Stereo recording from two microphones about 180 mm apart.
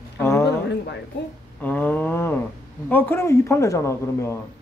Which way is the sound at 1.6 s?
10° left (ahead or behind).